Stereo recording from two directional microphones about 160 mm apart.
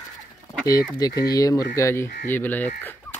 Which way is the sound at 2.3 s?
10° left (ahead or behind).